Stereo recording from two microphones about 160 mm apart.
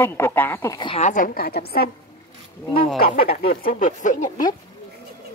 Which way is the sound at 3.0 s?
70° left (ahead or behind).